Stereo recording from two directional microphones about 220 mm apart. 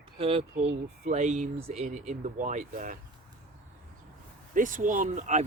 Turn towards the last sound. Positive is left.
turn(degrees=-35)  # may be behind; listen again after turning